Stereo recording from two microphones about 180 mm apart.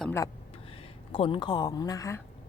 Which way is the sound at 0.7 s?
30° left (ahead or behind).